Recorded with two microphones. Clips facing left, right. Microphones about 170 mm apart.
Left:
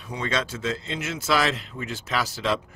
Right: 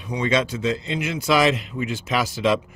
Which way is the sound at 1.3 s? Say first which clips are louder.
Right 5 dB; 15° right (ahead or behind).